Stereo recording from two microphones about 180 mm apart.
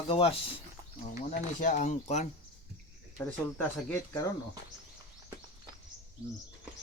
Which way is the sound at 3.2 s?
10° left (ahead or behind).